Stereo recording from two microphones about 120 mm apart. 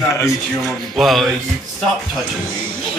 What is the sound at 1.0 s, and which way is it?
Speech, centre (ahead or behind).